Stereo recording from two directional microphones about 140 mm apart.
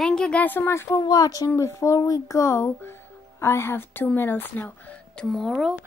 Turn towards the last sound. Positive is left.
turn(degrees=0)  # may be behind; listen again after turning